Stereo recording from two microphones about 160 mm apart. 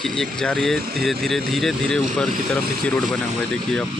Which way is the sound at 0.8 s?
70° right (ahead or behind).